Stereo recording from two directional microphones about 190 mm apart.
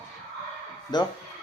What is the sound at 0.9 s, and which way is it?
Speech, 20° left (ahead or behind).